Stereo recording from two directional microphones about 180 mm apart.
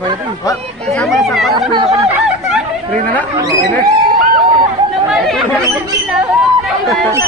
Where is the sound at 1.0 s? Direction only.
Centre (ahead or behind).